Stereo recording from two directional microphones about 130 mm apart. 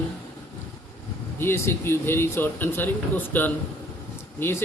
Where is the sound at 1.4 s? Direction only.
20° left (ahead or behind).